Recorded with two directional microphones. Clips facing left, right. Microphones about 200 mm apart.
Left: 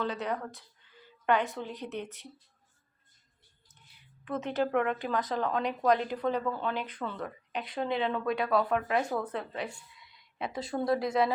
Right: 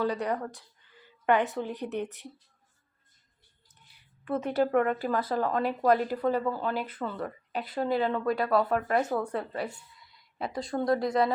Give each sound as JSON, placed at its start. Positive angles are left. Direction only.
{"t": 0.0, "sound": "a woman's voice", "side_deg": -15}
{"t": 4.3, "sound": "speech", "side_deg": -10}